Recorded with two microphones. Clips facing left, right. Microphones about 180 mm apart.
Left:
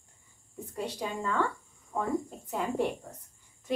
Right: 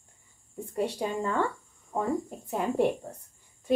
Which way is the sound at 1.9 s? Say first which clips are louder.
Right 2 dB; 15° right (ahead or behind).